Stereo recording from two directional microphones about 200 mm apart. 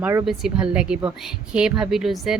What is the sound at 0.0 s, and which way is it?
Speech, 10° right (ahead or behind).